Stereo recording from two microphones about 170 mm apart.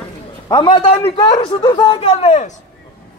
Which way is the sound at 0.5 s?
25° left (ahead or behind).